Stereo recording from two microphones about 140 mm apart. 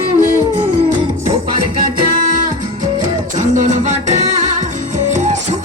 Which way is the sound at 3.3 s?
60° right (ahead or behind).